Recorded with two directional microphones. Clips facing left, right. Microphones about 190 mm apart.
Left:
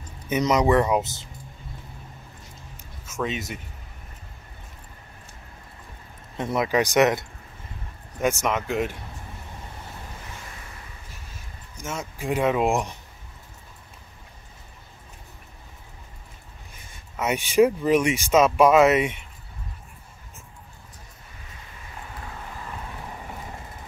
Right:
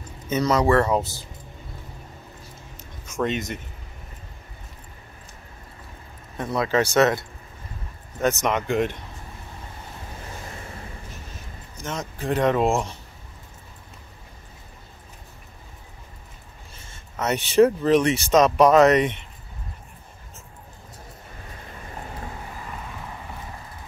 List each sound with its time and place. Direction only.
0.3 s speech: 15° left (ahead or behind)
2.8 s a sound: 5° left (ahead or behind)
6.3 s speech: 20° left (ahead or behind); by 8.9 s 5° left (ahead or behind)
11.7 s speech: 10° left (ahead or behind)
16.7 s speech: 10° left (ahead or behind)